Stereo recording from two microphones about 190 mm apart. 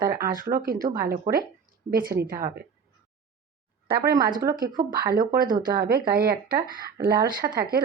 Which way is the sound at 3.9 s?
55° right (ahead or behind).